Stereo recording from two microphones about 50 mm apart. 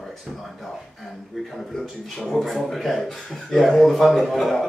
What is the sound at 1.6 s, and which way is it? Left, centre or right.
A man's voice, centre.